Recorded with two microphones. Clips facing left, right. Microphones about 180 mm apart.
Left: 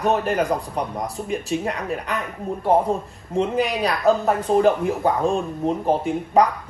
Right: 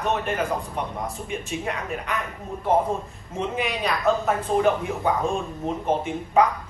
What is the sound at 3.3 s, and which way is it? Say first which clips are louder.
Speech: left 6 dB; 35° left (ahead or behind).